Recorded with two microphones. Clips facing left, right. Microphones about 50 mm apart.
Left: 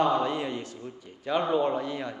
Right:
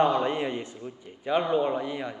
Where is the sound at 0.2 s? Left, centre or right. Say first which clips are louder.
Right 1 dB; right.